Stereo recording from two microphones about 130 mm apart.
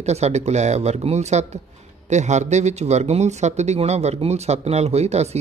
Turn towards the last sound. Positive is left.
turn(degrees=-55)  # may be behind; listen again after turning